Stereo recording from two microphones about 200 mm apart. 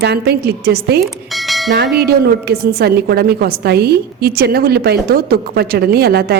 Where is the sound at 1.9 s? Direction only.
50° right (ahead or behind).